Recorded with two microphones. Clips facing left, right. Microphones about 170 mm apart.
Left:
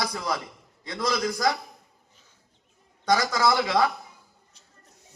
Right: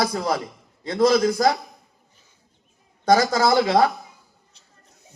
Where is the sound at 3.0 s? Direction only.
45° right (ahead or behind).